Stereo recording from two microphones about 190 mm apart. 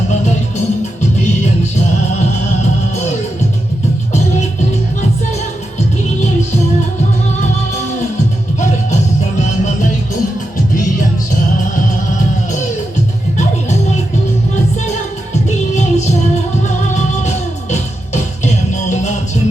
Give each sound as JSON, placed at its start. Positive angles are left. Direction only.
{"t": 9.4, "sound": "music", "side_deg": 40}
{"t": 13.3, "sound": "music", "side_deg": 40}
{"t": 15.4, "sound": "music", "side_deg": 40}